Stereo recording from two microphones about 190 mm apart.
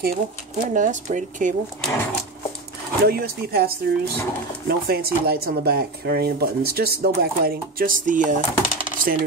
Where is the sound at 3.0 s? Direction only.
55° right (ahead or behind).